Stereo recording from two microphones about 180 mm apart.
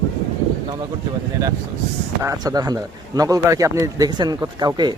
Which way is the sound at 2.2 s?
15° right (ahead or behind).